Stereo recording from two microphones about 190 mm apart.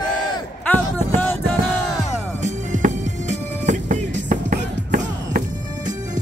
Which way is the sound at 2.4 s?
40° right (ahead or behind).